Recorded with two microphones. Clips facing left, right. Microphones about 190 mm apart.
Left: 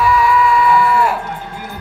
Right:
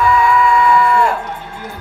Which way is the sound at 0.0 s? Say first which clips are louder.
Right 1 dB; 5° left (ahead or behind).